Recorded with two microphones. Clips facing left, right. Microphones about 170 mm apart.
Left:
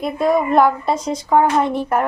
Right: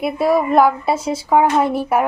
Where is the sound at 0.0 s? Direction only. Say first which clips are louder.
Right 1 dB; 5° right (ahead or behind).